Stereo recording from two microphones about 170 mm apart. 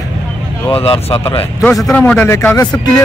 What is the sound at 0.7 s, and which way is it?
Speech, 35° left (ahead or behind).